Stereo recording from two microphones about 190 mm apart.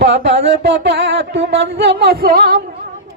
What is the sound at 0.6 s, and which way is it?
Music, 60° right (ahead or behind).